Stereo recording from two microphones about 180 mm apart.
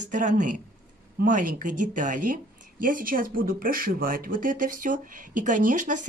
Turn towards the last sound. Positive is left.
turn(degrees=-45)  # may be behind; listen again after turning